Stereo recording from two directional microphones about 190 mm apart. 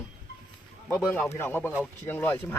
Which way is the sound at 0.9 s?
10° left (ahead or behind).